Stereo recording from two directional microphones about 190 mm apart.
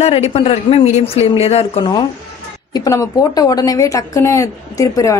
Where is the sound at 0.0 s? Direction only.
35° left (ahead or behind).